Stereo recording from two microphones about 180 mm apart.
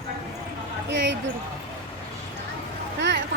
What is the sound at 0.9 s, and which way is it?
Speech, 90° right.